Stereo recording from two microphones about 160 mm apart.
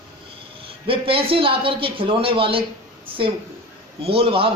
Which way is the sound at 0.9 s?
35° right (ahead or behind).